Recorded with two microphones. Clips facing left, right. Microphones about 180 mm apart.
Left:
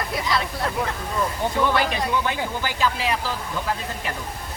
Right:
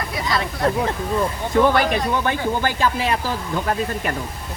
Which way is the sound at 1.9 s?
55° right (ahead or behind).